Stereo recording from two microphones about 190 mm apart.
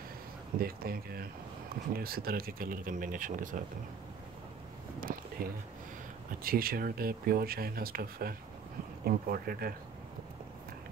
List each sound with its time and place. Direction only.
0.6 s speech: 50° right (ahead or behind)
5.1 s a sound: 45° right (ahead or behind)
6.4 s speech: 50° right (ahead or behind)